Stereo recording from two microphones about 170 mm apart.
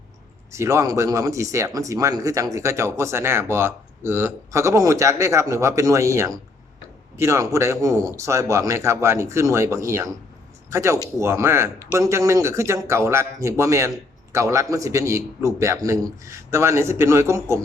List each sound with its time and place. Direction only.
0.5 s speech: 15° right (ahead or behind)